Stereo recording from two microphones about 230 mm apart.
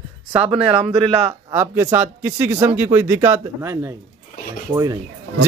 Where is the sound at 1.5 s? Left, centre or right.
Centre.